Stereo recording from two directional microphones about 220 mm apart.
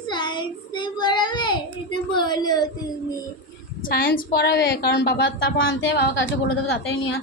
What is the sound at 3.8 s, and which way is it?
A woman's voice, 40° left (ahead or behind).